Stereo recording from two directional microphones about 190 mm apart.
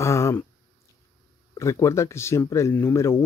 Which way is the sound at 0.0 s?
15° left (ahead or behind).